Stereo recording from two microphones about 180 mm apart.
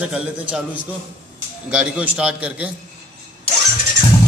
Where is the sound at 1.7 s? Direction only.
5° right (ahead or behind).